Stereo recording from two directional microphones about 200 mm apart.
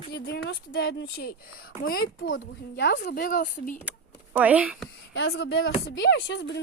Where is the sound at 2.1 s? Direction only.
70° left (ahead or behind); by 3.8 s 45° left (ahead or behind).